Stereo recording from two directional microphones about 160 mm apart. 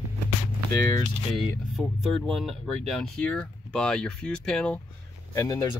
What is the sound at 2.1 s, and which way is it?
Speech, centre (ahead or behind).